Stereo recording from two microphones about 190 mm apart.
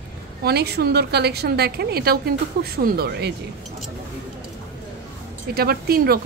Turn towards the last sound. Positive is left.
turn(degrees=-55)  # may be behind; listen again after turning